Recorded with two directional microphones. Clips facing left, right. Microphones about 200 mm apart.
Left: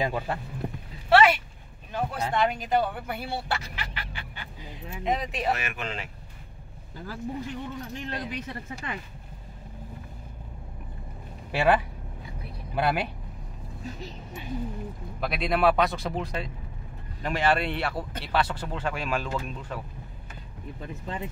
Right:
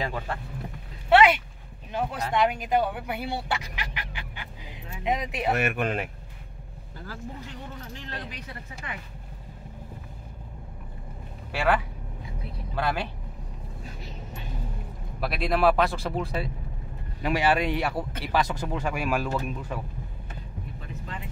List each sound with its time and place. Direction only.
0.0 s speech: 15° left (ahead or behind)
1.1 s speech: 15° right (ahead or behind)
5.5 s speech: 55° right (ahead or behind)
7.1 s speech: 15° left (ahead or behind)
11.5 s speech: 20° left (ahead or behind)
15.1 s speech: centre (ahead or behind)